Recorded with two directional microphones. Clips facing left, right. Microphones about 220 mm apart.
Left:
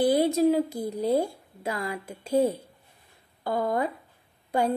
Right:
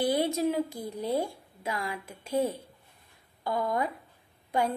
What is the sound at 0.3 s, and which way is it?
Speech, 35° left (ahead or behind).